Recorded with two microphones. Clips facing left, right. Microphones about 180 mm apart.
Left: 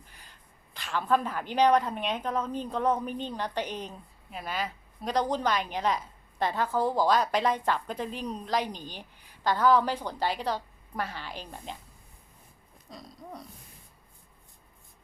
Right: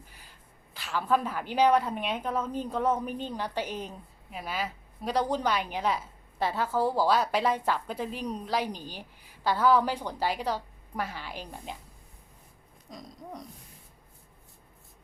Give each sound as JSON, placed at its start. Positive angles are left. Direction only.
{"t": 0.1, "sound": "a woman's voice", "side_deg": -10}
{"t": 12.9, "sound": "a woman's voice", "side_deg": -15}